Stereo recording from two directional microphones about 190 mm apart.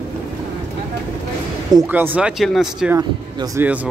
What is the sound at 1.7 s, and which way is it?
Speech, 20° right (ahead or behind).